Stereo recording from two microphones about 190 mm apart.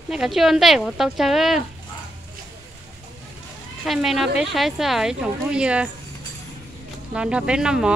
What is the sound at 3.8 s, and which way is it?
Speech, centre (ahead or behind).